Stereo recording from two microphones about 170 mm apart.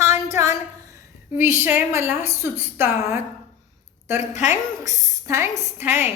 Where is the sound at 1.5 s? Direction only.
10° right (ahead or behind).